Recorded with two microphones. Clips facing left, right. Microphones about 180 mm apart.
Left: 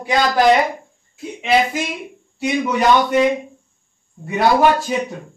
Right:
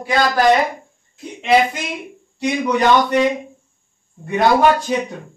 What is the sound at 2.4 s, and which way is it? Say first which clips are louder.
Speech: right 1 dB; 5° left (ahead or behind).